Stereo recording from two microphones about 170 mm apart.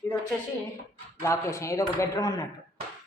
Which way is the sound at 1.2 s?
15° left (ahead or behind).